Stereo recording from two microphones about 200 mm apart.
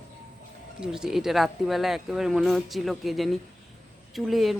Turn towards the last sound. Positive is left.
turn(degrees=0)  # may be behind; listen again after turning